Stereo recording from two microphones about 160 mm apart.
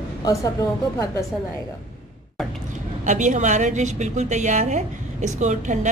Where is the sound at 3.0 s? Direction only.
50° right (ahead or behind).